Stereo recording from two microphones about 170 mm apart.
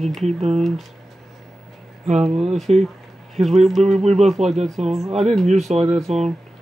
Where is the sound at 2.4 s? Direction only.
Centre (ahead or behind).